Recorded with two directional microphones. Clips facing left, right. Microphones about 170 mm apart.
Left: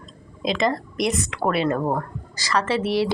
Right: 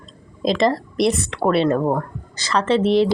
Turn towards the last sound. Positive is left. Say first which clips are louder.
# right 6 dB
turn(degrees=-20)  # may be behind; listen again after turning